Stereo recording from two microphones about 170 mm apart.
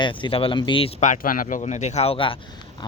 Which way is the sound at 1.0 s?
50° left (ahead or behind).